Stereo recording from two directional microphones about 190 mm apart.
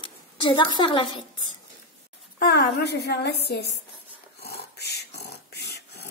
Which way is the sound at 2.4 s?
60° left (ahead or behind).